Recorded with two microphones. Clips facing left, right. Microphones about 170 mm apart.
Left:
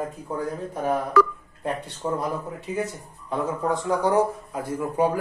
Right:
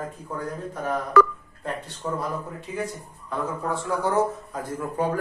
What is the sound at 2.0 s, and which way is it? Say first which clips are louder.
Speech: left 3 dB; 20° left (ahead or behind).